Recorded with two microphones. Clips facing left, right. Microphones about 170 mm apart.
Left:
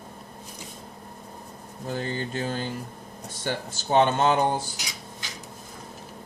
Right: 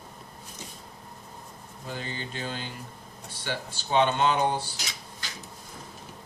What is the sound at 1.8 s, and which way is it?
Speech, 45° left (ahead or behind).